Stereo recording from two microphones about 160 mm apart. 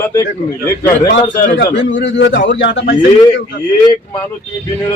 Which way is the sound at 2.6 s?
90° left.